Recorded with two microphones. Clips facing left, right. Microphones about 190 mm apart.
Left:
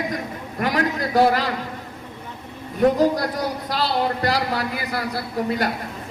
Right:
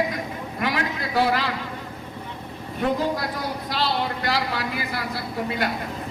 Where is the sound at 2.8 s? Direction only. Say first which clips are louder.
Left 6 dB; 40° left (ahead or behind).